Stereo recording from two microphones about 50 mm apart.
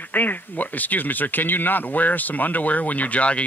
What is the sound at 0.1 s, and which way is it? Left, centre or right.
Speech, left.